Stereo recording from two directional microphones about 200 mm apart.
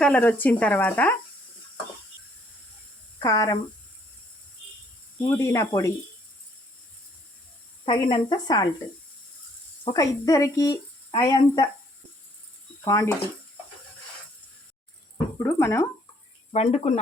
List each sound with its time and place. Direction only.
0.0 s speech: 5° left (ahead or behind)
3.2 s speech: 15° left (ahead or behind)
5.4 s speech: 15° left (ahead or behind)
7.9 s a woman's voice: 25° left (ahead or behind)
9.8 s speech: 20° left (ahead or behind)
12.8 s speech: 15° left (ahead or behind)
15.4 s speech: 15° left (ahead or behind)
16.5 s speech: 35° left (ahead or behind)